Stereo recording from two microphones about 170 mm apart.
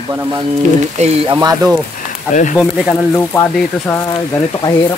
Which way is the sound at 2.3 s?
45° left (ahead or behind).